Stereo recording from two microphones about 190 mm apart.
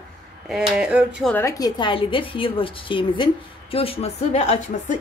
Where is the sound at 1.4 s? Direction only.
20° left (ahead or behind); by 5.0 s 35° left (ahead or behind).